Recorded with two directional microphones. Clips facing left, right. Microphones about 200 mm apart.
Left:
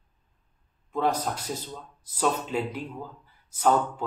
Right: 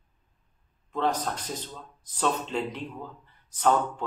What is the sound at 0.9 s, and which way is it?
A man's voice, 10° left (ahead or behind).